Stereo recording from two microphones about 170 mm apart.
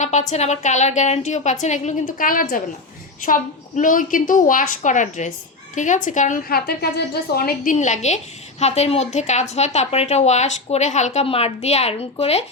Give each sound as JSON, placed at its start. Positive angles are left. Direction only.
{"t": 0.0, "sound": "a woman's voice", "side_deg": 45}